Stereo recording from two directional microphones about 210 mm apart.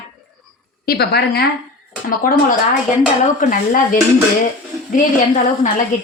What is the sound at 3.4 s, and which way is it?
A woman's voice, 40° left (ahead or behind).